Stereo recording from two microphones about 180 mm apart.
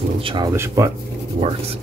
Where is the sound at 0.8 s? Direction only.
15° right (ahead or behind).